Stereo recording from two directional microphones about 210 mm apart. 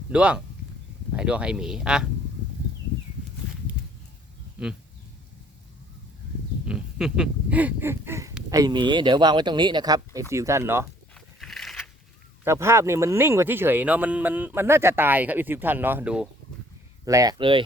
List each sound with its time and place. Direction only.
0.1 s speech: 5° right (ahead or behind)
6.7 s speech: 5° right (ahead or behind)
11.1 s a sound: centre (ahead or behind)
12.5 s speech: 10° right (ahead or behind)
17.1 s speech: 15° right (ahead or behind)